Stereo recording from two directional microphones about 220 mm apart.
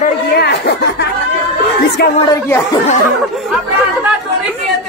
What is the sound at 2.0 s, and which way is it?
Speech, 45° left (ahead or behind).